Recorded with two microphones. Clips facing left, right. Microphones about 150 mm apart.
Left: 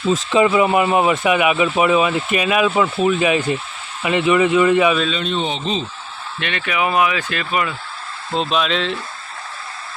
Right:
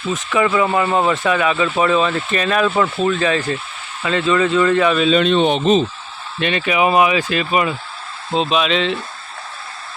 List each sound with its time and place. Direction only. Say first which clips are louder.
0.3 s speech: left 1 dB; 20° left (ahead or behind)
5.2 s speech: right 7 dB; 75° right (ahead or behind); by 5.8 s 60° right (ahead or behind)
6.4 s speech: right 5 dB; 25° right (ahead or behind)
8.3 s speech: right 2 dB; 5° right (ahead or behind)